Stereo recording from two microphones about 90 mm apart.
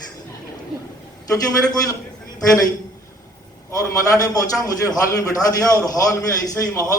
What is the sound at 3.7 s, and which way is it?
A man's voice, 40° left (ahead or behind).